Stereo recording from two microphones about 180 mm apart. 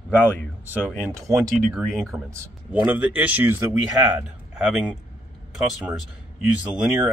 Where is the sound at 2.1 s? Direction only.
15° right (ahead or behind).